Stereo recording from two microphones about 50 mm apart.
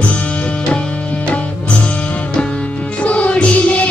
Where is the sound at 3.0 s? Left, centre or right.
Left.